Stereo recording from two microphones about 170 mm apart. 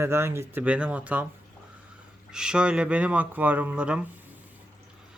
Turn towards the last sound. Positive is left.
turn(degrees=-5)  # may be behind; listen again after turning